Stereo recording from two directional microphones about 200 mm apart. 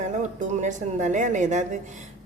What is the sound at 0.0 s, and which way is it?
Speech, 35° right (ahead or behind).